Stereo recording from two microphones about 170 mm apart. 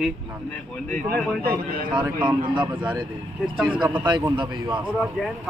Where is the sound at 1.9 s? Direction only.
30° right (ahead or behind).